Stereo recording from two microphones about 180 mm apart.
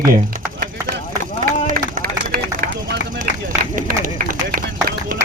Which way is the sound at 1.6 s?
50° right (ahead or behind).